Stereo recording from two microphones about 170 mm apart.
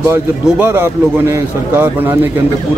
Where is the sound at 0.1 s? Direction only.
10° right (ahead or behind).